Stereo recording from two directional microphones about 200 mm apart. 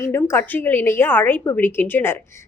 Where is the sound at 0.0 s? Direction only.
10° left (ahead or behind).